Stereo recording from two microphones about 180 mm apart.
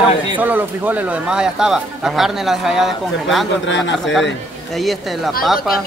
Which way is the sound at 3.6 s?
90° left.